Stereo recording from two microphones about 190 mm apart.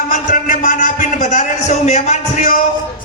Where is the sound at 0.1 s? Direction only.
40° left (ahead or behind).